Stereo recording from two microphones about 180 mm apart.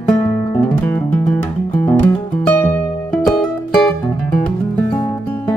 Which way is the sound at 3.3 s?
Centre (ahead or behind).